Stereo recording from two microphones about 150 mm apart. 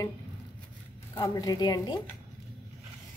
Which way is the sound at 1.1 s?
25° left (ahead or behind).